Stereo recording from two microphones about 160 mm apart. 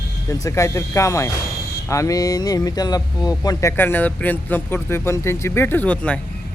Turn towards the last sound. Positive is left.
turn(degrees=10)  # may be behind; listen again after turning